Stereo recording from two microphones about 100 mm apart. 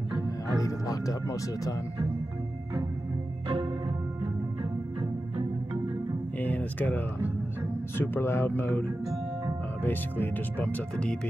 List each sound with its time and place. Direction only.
0.6 s music: 35° left (ahead or behind)
6.4 s a sound: 20° left (ahead or behind)
8.0 s speech: 25° left (ahead or behind)
9.8 s speech: 20° left (ahead or behind)